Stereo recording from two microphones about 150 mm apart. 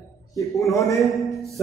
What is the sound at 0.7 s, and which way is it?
Speech, 20° left (ahead or behind).